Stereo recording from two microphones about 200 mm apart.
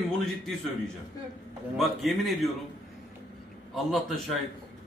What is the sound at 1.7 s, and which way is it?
Speech, centre (ahead or behind).